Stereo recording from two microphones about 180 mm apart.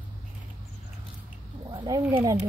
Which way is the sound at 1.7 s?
25° right (ahead or behind).